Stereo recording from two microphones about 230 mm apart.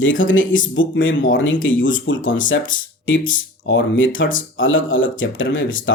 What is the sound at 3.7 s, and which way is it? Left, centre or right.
Speech, left.